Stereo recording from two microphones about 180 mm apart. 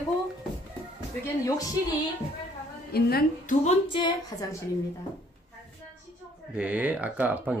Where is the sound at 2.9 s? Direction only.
60° left (ahead or behind).